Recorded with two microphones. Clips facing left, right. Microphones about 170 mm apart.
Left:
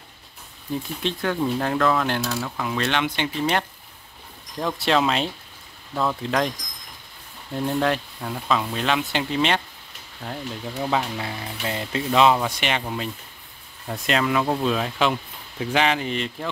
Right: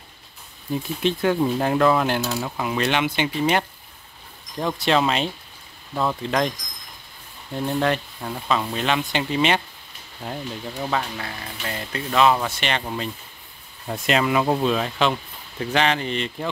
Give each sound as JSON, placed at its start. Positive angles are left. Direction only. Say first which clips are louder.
{"t": 1.0, "sound": "speech", "louder": "right 4 dB", "side_deg": -15}
{"t": 7.5, "sound": "speech", "louder": "even", "side_deg": 0}
{"t": 10.9, "sound": "speech", "louder": "left 2 dB", "side_deg": 15}
{"t": 14.7, "sound": "speech", "louder": "right 1 dB", "side_deg": 5}